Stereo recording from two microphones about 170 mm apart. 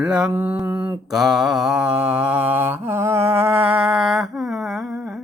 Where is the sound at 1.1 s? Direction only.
Centre (ahead or behind).